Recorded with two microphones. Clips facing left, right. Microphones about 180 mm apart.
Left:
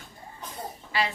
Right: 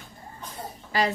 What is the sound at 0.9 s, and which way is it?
Speech, 40° right (ahead or behind).